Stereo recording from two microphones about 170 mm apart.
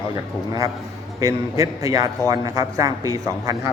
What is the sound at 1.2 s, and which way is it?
A man's voice, 20° right (ahead or behind).